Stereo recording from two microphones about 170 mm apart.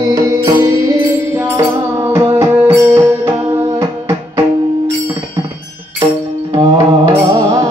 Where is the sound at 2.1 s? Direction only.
15° right (ahead or behind).